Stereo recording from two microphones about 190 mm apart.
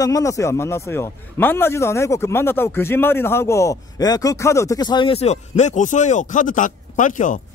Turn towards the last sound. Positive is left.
turn(degrees=40)  # may be behind; listen again after turning